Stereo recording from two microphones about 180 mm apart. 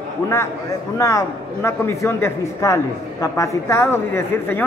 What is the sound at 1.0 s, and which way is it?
Speech, 15° left (ahead or behind).